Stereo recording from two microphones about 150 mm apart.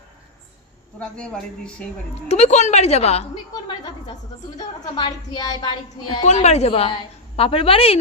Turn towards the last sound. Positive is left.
turn(degrees=40)  # may be behind; listen again after turning